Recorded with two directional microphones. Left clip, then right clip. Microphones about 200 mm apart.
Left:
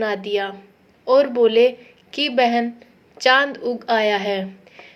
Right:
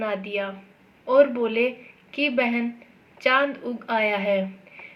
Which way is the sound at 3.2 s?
50° left (ahead or behind).